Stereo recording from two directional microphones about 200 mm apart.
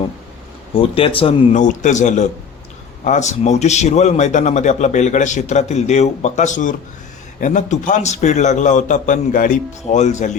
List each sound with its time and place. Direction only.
0.7 s speech: 30° left (ahead or behind)
1.5 s a man's voice: 40° left (ahead or behind)